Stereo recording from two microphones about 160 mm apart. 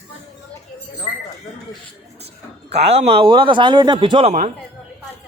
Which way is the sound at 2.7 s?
40° right (ahead or behind).